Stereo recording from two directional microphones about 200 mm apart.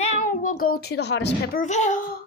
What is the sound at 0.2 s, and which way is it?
A child's voice, 40° left (ahead or behind).